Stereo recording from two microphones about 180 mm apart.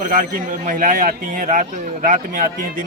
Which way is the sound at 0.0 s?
45° right (ahead or behind).